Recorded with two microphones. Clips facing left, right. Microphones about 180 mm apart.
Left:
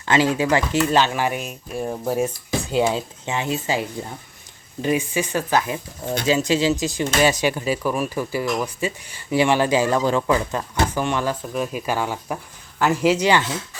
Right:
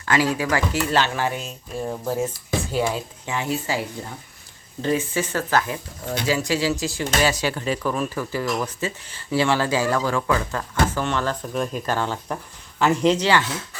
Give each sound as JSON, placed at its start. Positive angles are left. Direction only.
{"t": 0.0, "sound": "speech", "side_deg": 25}